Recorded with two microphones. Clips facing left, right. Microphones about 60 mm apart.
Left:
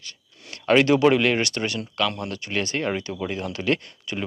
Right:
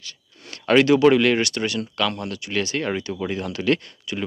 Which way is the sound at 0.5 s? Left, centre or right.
Centre.